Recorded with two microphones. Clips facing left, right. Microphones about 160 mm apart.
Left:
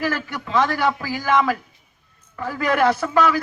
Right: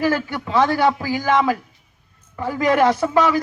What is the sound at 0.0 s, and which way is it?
A man's voice, 10° right (ahead or behind).